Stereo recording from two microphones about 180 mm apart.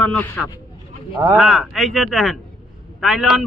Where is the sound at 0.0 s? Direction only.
5° left (ahead or behind).